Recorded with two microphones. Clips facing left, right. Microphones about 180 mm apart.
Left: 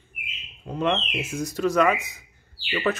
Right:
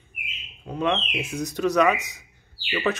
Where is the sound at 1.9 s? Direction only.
80° right.